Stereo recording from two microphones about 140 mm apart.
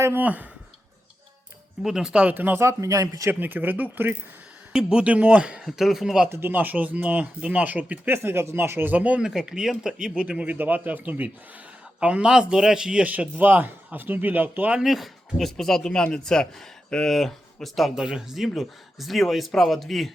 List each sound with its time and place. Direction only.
0.0 s speech: 15° right (ahead or behind)
1.8 s a man's voice: 5° right (ahead or behind)
6.2 s a man's voice: 15° right (ahead or behind); by 20.1 s centre (ahead or behind)